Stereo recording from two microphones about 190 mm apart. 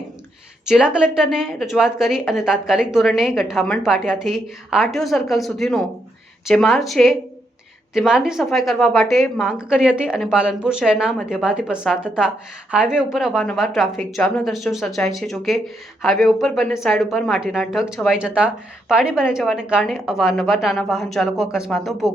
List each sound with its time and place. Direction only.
0.6 s a woman's voice: 5° right (ahead or behind)